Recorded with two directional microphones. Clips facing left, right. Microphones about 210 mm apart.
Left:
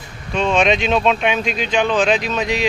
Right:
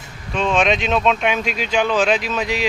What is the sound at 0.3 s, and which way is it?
Speech, centre (ahead or behind).